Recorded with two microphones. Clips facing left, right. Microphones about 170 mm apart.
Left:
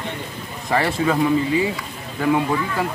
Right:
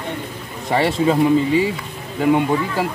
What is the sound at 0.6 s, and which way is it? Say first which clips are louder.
Speech: right 3 dB; 25° right (ahead or behind).